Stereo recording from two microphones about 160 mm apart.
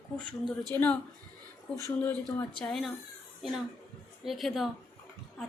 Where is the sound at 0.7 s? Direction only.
15° left (ahead or behind).